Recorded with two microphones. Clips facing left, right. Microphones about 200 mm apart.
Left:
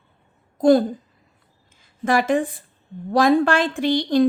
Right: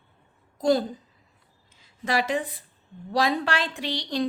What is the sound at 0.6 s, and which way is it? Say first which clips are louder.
A woman's voice: left 7 dB; 55° left (ahead or behind).